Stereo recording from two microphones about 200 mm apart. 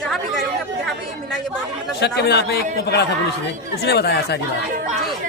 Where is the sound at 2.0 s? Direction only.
55° left (ahead or behind).